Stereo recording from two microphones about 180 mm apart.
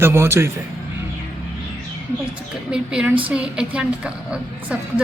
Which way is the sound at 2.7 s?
5° right (ahead or behind).